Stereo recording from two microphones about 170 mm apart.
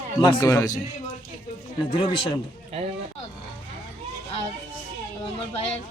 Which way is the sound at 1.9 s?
30° left (ahead or behind).